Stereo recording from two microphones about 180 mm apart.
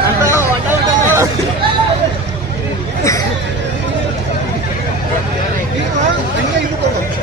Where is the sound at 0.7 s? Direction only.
15° right (ahead or behind).